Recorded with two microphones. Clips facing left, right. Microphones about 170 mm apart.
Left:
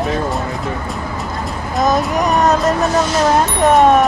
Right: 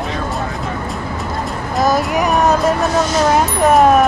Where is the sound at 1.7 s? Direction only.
5° right (ahead or behind).